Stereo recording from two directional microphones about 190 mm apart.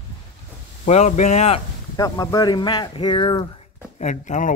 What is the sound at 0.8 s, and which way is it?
Speech, 35° left (ahead or behind).